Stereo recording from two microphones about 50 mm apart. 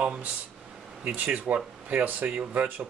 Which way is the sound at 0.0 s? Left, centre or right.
Right.